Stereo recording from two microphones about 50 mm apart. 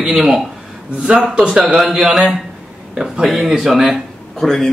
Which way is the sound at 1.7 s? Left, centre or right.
Centre.